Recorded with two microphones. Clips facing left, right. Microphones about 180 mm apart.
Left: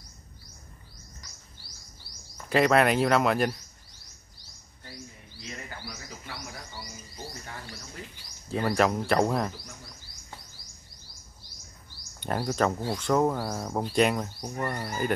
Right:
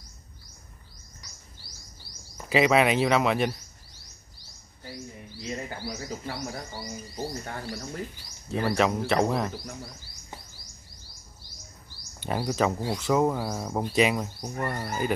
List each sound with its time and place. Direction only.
2.5 s speech: centre (ahead or behind)
4.9 s bird: 25° right (ahead or behind)
8.5 s speech: centre (ahead or behind)
12.2 s speech: centre (ahead or behind)